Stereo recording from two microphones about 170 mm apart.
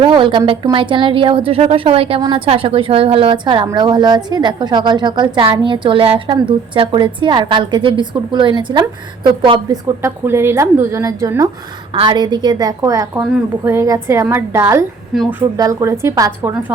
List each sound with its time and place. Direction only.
0.0 s a woman's voice: 30° right (ahead or behind)
10.0 s a woman's voice: 15° right (ahead or behind)